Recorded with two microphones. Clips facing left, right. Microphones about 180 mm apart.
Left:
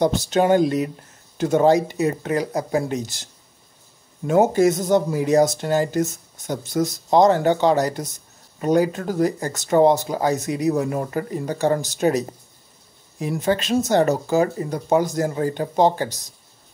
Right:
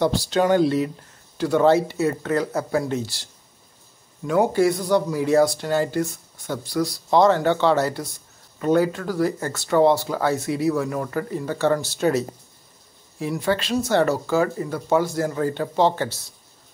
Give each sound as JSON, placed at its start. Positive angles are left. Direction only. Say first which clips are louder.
{"t": 0.0, "sound": "speech", "louder": "left 2 dB", "side_deg": 20}
{"t": 4.5, "sound": "speech", "louder": "left 2 dB", "side_deg": 20}
{"t": 13.3, "sound": "speech", "louder": "left 2 dB", "side_deg": 20}